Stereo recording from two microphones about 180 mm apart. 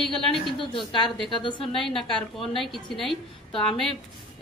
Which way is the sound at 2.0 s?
Centre (ahead or behind).